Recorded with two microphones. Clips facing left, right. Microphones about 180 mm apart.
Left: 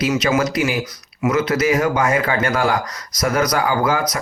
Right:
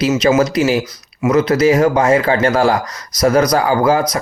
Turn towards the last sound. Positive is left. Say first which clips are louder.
# right 5 dB
turn(degrees=-35)  # may be behind; listen again after turning